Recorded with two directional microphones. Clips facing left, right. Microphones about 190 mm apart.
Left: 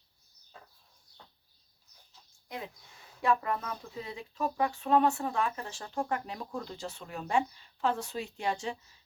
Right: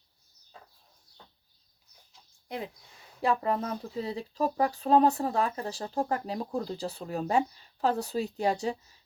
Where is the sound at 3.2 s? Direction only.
30° right (ahead or behind).